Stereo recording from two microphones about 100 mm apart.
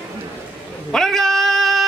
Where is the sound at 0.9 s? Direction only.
5° left (ahead or behind).